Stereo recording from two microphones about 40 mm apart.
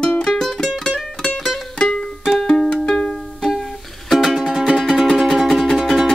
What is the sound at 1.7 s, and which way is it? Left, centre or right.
Music, left.